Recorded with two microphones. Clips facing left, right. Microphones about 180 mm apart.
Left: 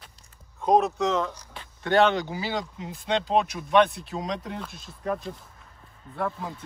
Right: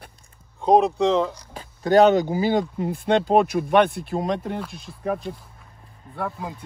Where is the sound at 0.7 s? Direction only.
30° right (ahead or behind); by 4.6 s 55° right (ahead or behind).